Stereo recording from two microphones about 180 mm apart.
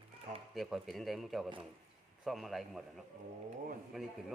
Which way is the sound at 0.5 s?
Centre (ahead or behind).